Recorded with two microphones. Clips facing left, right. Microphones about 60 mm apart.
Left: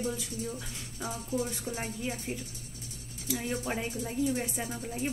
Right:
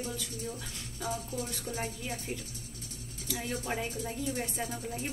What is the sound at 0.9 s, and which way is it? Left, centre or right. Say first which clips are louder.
Speech: left 3 dB; centre.